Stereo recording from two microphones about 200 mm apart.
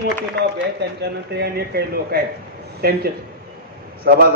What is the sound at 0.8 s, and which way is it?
A man's voice, 55° right (ahead or behind).